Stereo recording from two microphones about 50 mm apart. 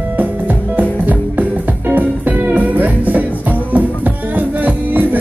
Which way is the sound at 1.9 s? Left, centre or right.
Right.